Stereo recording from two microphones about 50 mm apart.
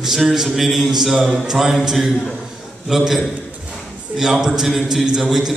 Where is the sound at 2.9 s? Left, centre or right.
Centre.